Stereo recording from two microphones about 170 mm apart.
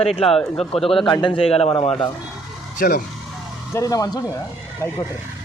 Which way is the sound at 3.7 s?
20° left (ahead or behind).